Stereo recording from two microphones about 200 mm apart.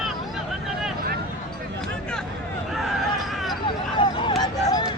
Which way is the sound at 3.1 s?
Centre (ahead or behind).